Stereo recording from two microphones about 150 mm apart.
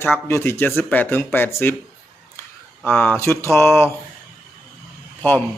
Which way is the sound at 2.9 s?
15° left (ahead or behind).